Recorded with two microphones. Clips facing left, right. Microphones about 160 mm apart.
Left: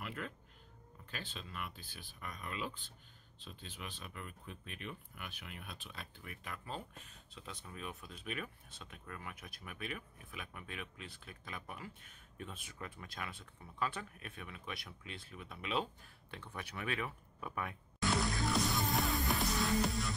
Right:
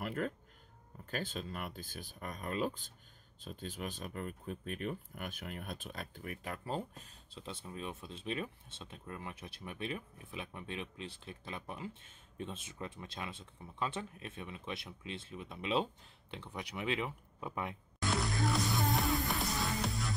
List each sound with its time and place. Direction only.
0.0 s speech: 45° right (ahead or behind); by 17.7 s 20° right (ahead or behind)
18.0 s music: centre (ahead or behind)